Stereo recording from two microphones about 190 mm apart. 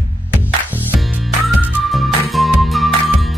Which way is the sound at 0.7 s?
5° right (ahead or behind).